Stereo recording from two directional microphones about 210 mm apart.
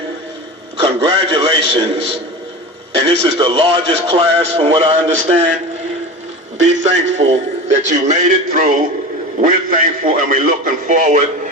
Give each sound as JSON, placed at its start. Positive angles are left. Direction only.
{"t": 0.8, "sound": "a man's voice", "side_deg": -25}
{"t": 6.8, "sound": "a man's voice", "side_deg": -35}